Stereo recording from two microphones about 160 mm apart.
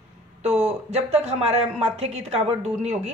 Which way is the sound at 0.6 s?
40° right (ahead or behind).